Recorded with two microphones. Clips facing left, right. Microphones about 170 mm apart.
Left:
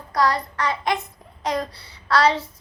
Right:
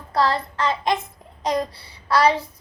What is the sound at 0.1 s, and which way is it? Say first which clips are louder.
Child singing: even; 25° right (ahead or behind).